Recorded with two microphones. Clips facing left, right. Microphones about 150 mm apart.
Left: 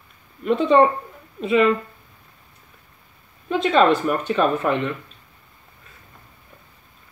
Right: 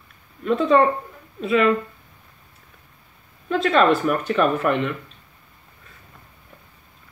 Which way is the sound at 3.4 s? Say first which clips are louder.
Left 1 dB; centre (ahead or behind).